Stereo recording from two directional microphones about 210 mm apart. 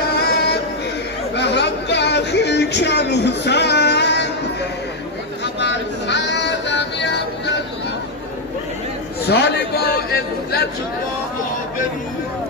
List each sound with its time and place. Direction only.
0.2 s a sound: 50° left (ahead or behind)
1.3 s chatter: 55° left (ahead or behind)
5.4 s music: 55° left (ahead or behind)
9.3 s chatter: 55° left (ahead or behind)